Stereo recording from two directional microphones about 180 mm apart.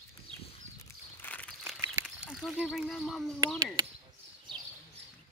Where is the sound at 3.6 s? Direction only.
20° right (ahead or behind).